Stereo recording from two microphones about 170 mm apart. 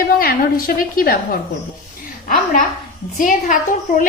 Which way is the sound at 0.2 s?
60° left (ahead or behind).